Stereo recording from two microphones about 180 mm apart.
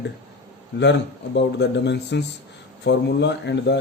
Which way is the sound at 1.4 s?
75° left (ahead or behind).